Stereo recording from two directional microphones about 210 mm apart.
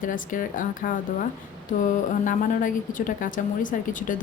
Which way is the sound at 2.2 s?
35° left (ahead or behind).